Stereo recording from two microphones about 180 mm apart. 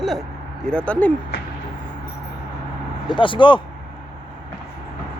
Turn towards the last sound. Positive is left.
turn(degrees=25)  # may be behind; listen again after turning